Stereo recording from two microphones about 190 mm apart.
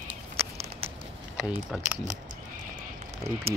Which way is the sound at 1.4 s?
5° right (ahead or behind).